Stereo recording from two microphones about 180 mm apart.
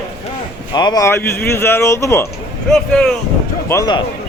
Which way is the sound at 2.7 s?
5° left (ahead or behind).